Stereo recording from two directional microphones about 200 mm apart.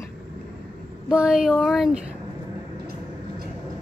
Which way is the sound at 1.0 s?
5° right (ahead or behind).